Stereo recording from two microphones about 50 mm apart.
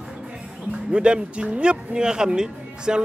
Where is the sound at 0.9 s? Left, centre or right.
Centre.